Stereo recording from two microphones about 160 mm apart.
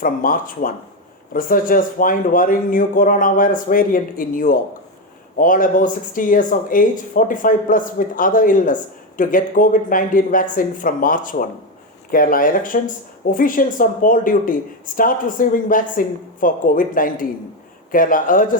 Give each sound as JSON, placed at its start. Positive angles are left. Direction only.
{"t": 0.0, "sound": "speech", "side_deg": 60}